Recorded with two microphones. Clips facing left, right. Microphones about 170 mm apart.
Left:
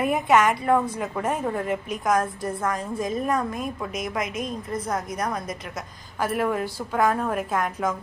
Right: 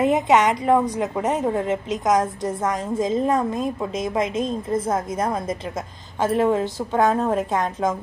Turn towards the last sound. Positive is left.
turn(degrees=-25)  # may be behind; listen again after turning